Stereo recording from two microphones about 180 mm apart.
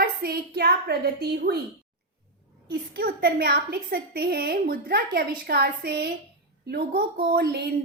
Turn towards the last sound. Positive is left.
turn(degrees=-65)  # may be behind; listen again after turning